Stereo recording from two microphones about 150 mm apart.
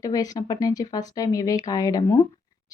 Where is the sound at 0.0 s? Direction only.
25° left (ahead or behind).